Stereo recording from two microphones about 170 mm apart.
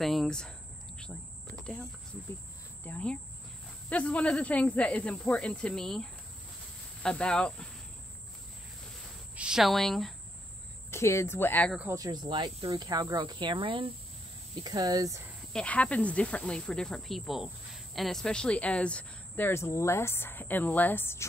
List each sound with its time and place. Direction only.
0.0 s a sound: centre (ahead or behind)
2.8 s speech: 10° left (ahead or behind)
9.3 s speech: 5° right (ahead or behind)
10.9 s speech: 15° left (ahead or behind)
11.9 s speech: 20° right (ahead or behind)
15.5 s speech: 5° left (ahead or behind)